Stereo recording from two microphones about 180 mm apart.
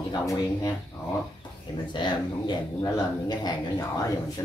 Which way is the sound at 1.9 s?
25° left (ahead or behind).